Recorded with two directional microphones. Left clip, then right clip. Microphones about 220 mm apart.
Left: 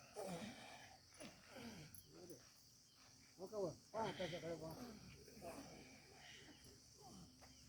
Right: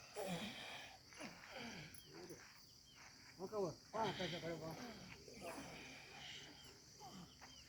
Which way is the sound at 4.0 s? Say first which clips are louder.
Right 3 dB; 45° right (ahead or behind).